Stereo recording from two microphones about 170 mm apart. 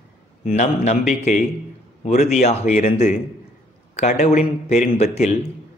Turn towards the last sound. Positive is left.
turn(degrees=40)  # may be behind; listen again after turning